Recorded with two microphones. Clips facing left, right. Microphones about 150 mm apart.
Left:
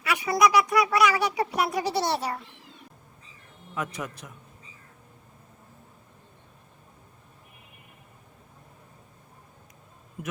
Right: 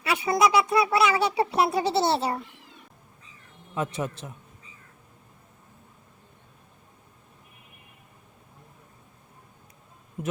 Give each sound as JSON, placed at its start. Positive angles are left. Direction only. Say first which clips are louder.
{"t": 0.0, "sound": "speech", "louder": "even", "side_deg": -30}
{"t": 3.8, "sound": "speech", "louder": "right 4 dB", "side_deg": -30}
{"t": 10.2, "sound": "a man's voice", "louder": "right 5 dB", "side_deg": -20}